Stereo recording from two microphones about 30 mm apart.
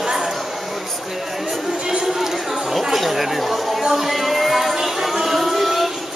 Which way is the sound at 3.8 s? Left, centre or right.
Centre.